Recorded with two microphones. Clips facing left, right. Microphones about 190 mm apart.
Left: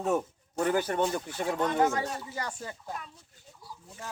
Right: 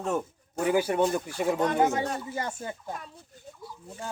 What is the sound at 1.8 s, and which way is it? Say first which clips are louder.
Speech: right 2 dB; 20° right (ahead or behind).